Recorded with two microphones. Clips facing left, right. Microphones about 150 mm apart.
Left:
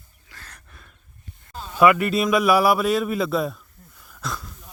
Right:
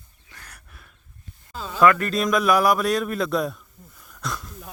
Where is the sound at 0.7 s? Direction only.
5° right (ahead or behind).